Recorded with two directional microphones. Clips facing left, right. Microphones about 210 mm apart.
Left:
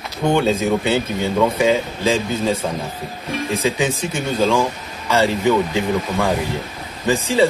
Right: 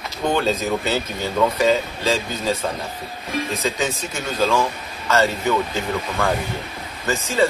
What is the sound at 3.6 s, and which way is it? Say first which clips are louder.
A man's voice: left 4 dB; 10° left (ahead or behind).